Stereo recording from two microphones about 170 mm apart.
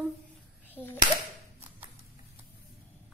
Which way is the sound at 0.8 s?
10° left (ahead or behind).